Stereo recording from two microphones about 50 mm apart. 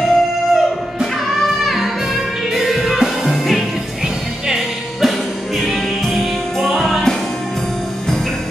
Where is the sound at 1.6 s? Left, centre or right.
Centre.